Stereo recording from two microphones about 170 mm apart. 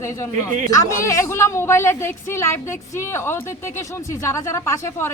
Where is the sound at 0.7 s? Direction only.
20° left (ahead or behind).